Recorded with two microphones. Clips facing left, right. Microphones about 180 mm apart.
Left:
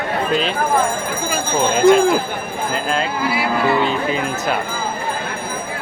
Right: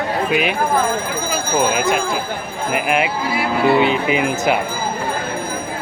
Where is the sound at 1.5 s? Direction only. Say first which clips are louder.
Even; 10° right (ahead or behind).